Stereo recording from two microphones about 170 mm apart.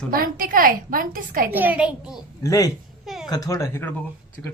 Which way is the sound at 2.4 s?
20° left (ahead or behind).